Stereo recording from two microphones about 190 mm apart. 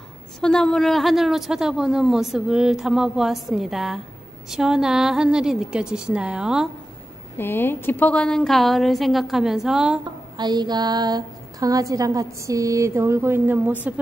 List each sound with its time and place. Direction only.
0.4 s speech: 5° left (ahead or behind)
7.3 s speech: 10° left (ahead or behind)
10.3 s a woman's voice: 20° right (ahead or behind)